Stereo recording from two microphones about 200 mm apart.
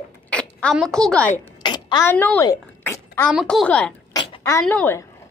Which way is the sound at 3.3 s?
Centre (ahead or behind).